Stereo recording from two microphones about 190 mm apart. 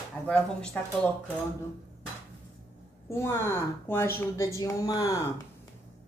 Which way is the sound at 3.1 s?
10° left (ahead or behind).